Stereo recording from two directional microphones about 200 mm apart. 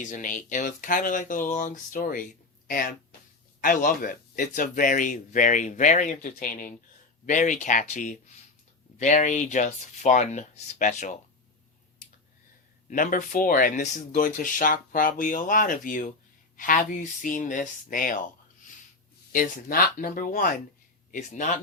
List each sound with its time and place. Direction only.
0.0 s speech: 40° left (ahead or behind)
12.9 s speech: 40° left (ahead or behind)
19.3 s speech: 45° left (ahead or behind)